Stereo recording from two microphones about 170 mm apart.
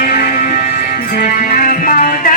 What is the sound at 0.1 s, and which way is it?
Music, 50° left (ahead or behind).